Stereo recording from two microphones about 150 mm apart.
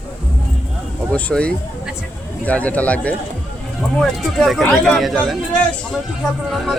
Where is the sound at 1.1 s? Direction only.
10° left (ahead or behind).